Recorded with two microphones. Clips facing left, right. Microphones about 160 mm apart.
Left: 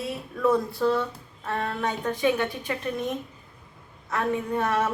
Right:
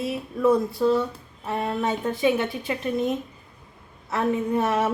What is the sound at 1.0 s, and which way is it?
A woman's voice, 20° right (ahead or behind).